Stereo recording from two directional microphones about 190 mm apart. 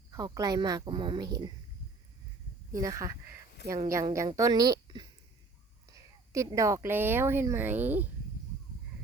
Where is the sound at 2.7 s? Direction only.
15° right (ahead or behind).